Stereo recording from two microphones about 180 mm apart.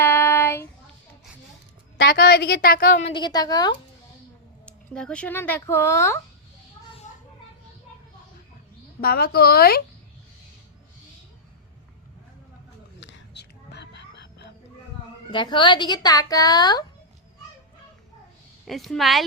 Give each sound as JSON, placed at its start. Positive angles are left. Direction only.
{"t": 0.0, "sound": "child singing", "side_deg": 15}
{"t": 2.0, "sound": "a woman's voice", "side_deg": 60}
{"t": 3.1, "sound": "speech", "side_deg": 25}
{"t": 4.6, "sound": "speech", "side_deg": 5}
{"t": 9.0, "sound": "a woman's voice", "side_deg": 55}
{"t": 13.0, "sound": "a sound", "side_deg": 70}
{"t": 15.3, "sound": "speech", "side_deg": 25}
{"t": 18.7, "sound": "speech", "side_deg": 0}